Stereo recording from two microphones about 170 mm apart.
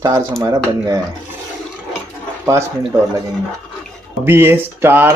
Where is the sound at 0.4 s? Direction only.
20° right (ahead or behind).